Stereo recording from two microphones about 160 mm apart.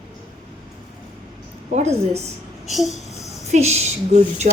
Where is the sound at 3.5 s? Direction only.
40° right (ahead or behind).